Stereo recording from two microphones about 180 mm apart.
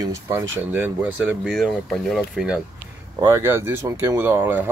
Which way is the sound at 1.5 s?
Centre (ahead or behind).